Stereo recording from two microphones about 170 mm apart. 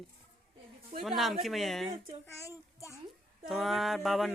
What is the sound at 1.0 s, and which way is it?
Speech, centre (ahead or behind).